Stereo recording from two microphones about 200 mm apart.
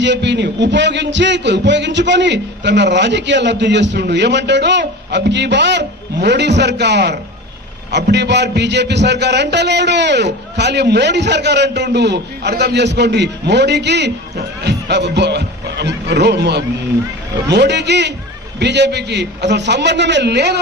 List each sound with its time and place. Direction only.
0.0 s a man's voice: 60° right (ahead or behind)